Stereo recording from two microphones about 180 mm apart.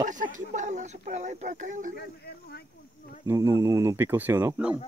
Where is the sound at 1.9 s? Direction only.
60° left (ahead or behind).